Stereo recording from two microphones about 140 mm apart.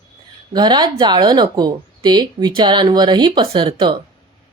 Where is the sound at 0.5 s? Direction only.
30° right (ahead or behind).